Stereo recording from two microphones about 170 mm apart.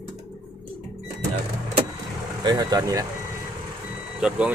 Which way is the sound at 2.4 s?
20° right (ahead or behind).